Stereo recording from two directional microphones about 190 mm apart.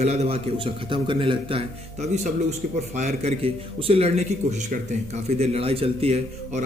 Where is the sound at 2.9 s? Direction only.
35° right (ahead or behind).